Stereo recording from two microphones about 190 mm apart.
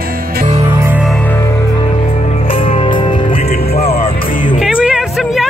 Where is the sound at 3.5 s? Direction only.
55° left (ahead or behind).